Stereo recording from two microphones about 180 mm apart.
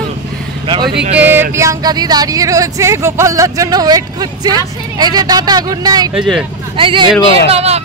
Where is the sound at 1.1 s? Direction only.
10° right (ahead or behind).